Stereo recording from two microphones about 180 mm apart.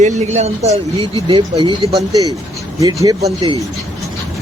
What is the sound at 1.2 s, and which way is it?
Speech, 25° right (ahead or behind).